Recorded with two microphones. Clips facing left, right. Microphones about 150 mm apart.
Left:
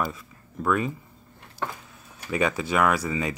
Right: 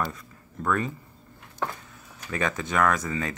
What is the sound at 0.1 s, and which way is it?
Speech, 10° left (ahead or behind).